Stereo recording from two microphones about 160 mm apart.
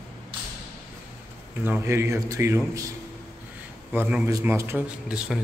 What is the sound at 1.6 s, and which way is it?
A man's voice, 15° right (ahead or behind).